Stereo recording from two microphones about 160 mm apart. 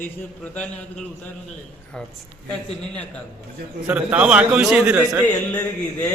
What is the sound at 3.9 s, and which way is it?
A man's voice, 10° right (ahead or behind).